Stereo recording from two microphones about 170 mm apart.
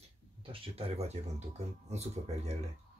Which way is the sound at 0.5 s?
35° right (ahead or behind).